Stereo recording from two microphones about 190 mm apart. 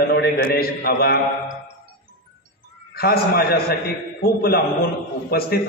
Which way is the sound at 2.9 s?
55° left (ahead or behind).